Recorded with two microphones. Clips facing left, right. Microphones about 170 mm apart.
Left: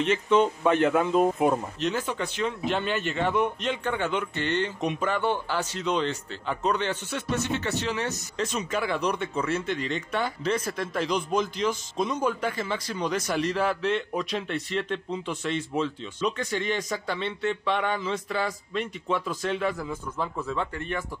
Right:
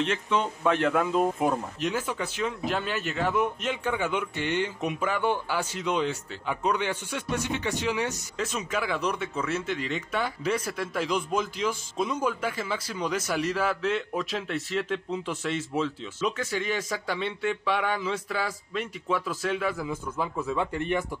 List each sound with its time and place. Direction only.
0.0 s speech: centre (ahead or behind)
1.8 s speech: 10° right (ahead or behind)
20.7 s speech: 15° right (ahead or behind)